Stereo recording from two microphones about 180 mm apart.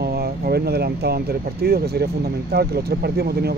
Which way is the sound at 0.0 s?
60° right (ahead or behind).